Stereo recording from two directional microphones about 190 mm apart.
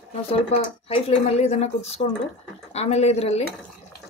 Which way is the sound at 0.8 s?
30° left (ahead or behind).